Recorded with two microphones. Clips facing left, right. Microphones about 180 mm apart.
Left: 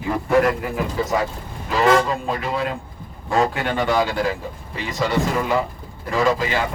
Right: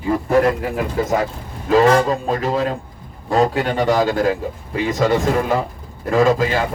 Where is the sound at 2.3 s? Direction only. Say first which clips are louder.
Right 4 dB; 40° right (ahead or behind).